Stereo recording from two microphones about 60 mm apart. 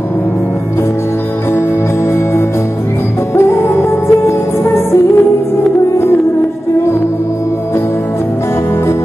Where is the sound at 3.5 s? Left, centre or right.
Left.